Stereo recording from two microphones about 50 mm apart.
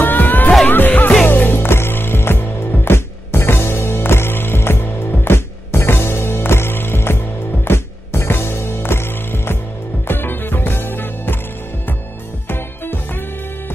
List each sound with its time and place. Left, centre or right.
0.0 s music: left
12.4 s music: left